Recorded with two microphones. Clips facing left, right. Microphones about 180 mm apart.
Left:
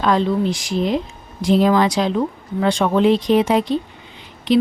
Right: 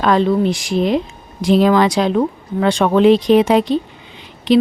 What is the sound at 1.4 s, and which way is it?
Speech, 80° right.